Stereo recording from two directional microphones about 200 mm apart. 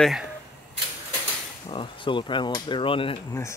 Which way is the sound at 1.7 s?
25° left (ahead or behind).